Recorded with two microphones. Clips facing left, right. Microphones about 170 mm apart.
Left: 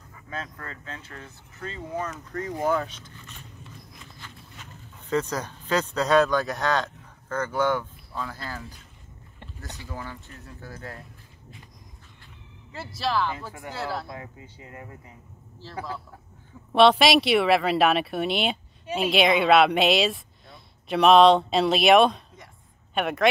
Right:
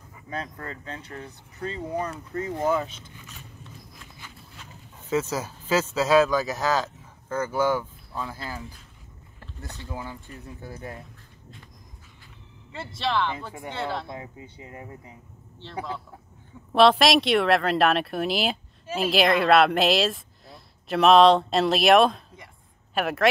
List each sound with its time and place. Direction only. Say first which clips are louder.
0.3 s speech: right 3 dB; 35° right (ahead or behind)
1.0 s speech: right 4 dB; 15° right (ahead or behind)
3.1 s a sound: even; 10° right (ahead or behind)
9.8 s speech: right 2 dB; 15° right (ahead or behind)
13.0 s speech: even; 5° left (ahead or behind)
14.0 s speech: right 2 dB; 20° right (ahead or behind)
16.7 s speech: even; centre (ahead or behind)